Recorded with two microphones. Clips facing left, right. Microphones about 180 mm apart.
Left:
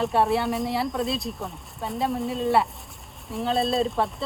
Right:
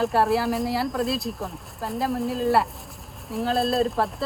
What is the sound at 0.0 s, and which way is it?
Speech, centre (ahead or behind).